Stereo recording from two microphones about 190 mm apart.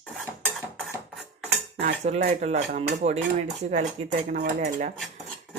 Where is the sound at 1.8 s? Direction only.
35° right (ahead or behind).